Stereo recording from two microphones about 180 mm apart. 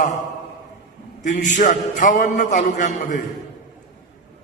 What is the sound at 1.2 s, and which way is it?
A man's voice, 45° left (ahead or behind).